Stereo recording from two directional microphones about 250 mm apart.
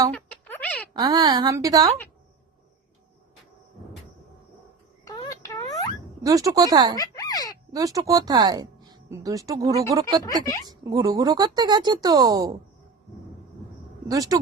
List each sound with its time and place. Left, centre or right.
0.1 s a sound: centre
0.9 s speech: centre
5.0 s a sound: centre
6.2 s speech: centre
7.0 s speech: centre
7.7 s speech: centre
14.1 s speech: centre